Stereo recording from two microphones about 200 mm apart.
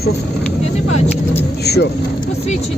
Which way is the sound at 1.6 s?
55° left (ahead or behind).